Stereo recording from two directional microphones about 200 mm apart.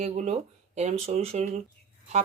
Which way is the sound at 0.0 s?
35° right (ahead or behind).